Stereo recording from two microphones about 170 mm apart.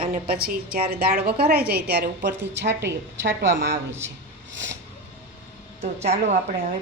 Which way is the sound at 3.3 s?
90° right.